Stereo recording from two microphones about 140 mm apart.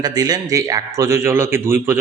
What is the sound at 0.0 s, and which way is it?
Speech, 25° right (ahead or behind).